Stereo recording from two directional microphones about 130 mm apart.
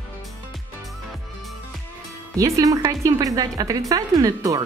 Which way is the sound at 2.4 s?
25° right (ahead or behind).